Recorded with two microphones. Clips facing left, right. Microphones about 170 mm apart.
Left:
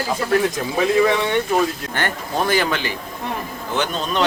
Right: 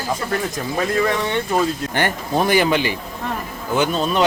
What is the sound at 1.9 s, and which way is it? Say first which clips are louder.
Speech: right 3 dB; 15° right (ahead or behind).